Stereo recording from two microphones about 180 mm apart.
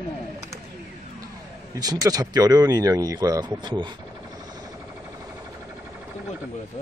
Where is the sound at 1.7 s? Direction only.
20° right (ahead or behind).